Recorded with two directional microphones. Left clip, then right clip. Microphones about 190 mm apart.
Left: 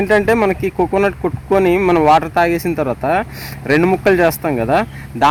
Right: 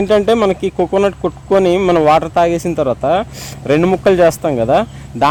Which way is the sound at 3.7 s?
40° right (ahead or behind).